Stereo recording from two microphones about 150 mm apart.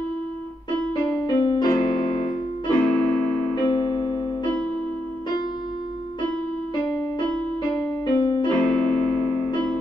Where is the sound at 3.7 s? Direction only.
30° left (ahead or behind).